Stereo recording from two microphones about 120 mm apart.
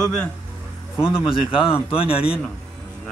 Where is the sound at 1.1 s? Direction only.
50° left (ahead or behind).